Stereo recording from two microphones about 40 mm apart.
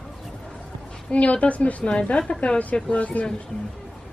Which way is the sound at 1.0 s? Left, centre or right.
Left.